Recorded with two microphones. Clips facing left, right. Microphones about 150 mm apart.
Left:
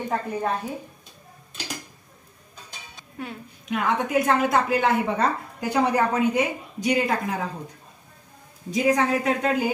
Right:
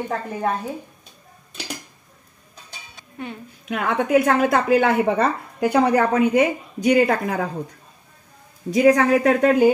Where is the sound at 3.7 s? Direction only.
55° right (ahead or behind).